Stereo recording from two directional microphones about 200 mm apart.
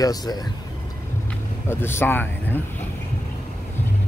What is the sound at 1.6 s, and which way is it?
Speech, 10° left (ahead or behind).